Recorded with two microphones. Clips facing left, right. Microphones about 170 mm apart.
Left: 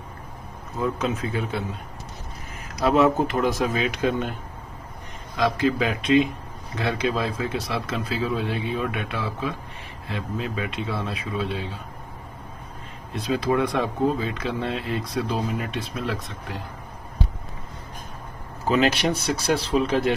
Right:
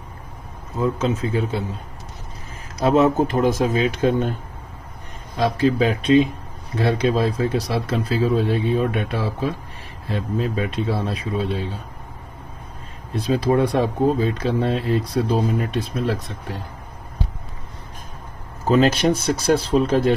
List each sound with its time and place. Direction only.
0.7 s speech: 20° right (ahead or behind)
1.1 s speech: 35° right (ahead or behind)
2.8 s speech: 25° right (ahead or behind)
5.3 s speech: 30° right (ahead or behind)
13.1 s speech: 35° right (ahead or behind)
18.7 s speech: 45° right (ahead or behind)